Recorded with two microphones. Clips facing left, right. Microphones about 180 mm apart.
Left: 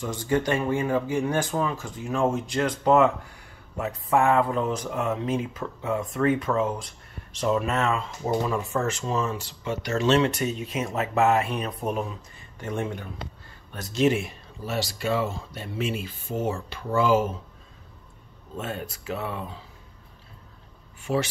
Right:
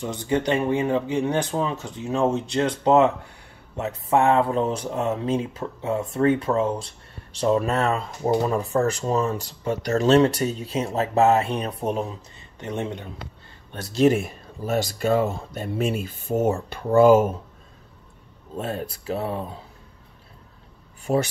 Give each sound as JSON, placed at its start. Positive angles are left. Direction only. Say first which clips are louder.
{"t": 0.0, "sound": "speech", "louder": "right 1 dB", "side_deg": -20}
{"t": 13.7, "sound": "speech", "louder": "right 4 dB", "side_deg": -30}
{"t": 18.6, "sound": "speech", "louder": "right 4 dB", "side_deg": -35}
{"t": 21.0, "sound": "speech", "louder": "right 4 dB", "side_deg": -40}